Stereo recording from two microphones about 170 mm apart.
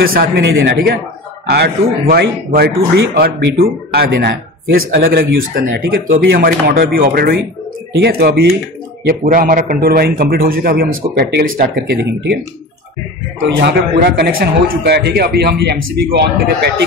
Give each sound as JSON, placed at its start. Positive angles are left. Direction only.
{"t": 0.0, "sound": "a man's voice", "side_deg": -60}
{"t": 9.2, "sound": "speech", "side_deg": -50}
{"t": 13.6, "sound": "a man's voice", "side_deg": -75}